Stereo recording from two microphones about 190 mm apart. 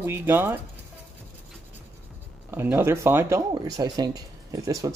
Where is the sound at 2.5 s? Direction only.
10° right (ahead or behind).